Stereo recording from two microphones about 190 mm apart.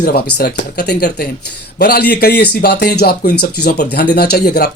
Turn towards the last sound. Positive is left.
turn(degrees=55)  # may be behind; listen again after turning